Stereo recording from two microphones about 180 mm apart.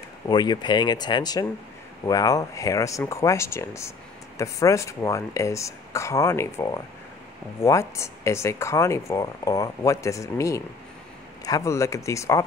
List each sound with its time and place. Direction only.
0.3 s speech: 25° left (ahead or behind)